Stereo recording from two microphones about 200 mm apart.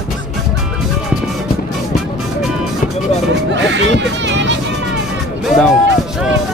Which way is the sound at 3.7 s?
65° right (ahead or behind).